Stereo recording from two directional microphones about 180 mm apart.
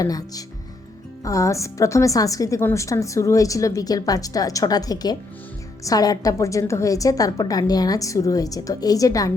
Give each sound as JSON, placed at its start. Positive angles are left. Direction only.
{"t": 0.0, "sound": "a woman's voice", "side_deg": 20}